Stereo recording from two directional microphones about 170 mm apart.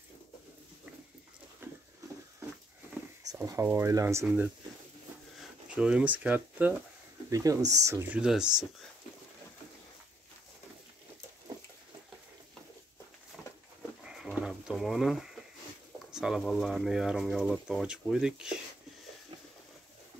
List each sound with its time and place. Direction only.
1.6 s pig: 15° right (ahead or behind)
3.3 s speech: 20° right (ahead or behind)
7.2 s speech: 20° right (ahead or behind); by 8.6 s 5° right (ahead or behind)
14.0 s sheep: 5° right (ahead or behind)
16.1 s speech: 5° right (ahead or behind)